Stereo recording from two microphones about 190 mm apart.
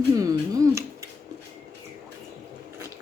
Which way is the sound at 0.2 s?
20° right (ahead or behind).